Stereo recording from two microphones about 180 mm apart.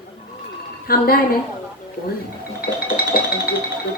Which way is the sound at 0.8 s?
55° left (ahead or behind).